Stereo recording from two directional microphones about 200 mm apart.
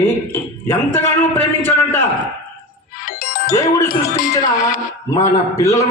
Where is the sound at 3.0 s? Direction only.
45° left (ahead or behind).